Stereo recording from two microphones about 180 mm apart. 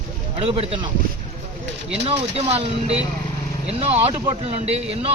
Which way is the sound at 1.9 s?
35° right (ahead or behind).